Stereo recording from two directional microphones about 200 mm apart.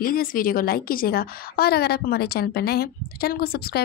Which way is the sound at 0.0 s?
45° left (ahead or behind).